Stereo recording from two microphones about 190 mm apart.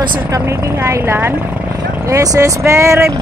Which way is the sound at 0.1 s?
10° right (ahead or behind).